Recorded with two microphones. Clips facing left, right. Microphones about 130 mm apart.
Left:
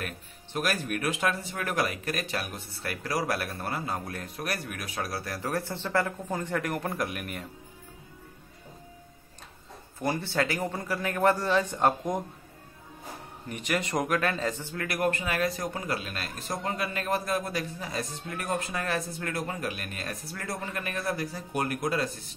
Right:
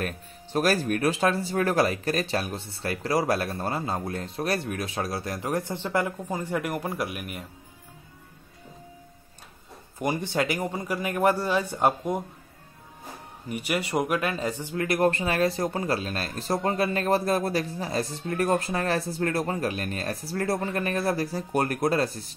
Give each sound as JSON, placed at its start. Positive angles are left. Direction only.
{"t": 0.0, "sound": "speech", "side_deg": -35}
{"t": 9.9, "sound": "a man's voice", "side_deg": -15}
{"t": 13.5, "sound": "speech", "side_deg": -10}